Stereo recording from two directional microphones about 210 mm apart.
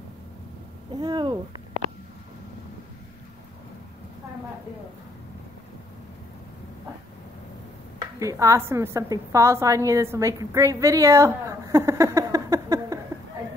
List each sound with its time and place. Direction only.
0.9 s speech: 20° right (ahead or behind)
8.0 s a woman's voice: 15° right (ahead or behind)